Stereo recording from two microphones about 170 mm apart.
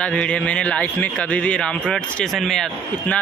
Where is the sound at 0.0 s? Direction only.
5° left (ahead or behind).